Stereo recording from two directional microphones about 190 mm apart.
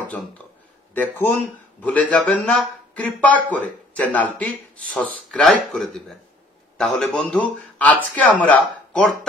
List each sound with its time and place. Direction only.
0.0 s a man's voice: 5° left (ahead or behind)